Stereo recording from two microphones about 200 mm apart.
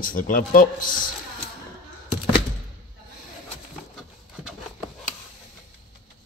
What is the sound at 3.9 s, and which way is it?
Wood, centre (ahead or behind).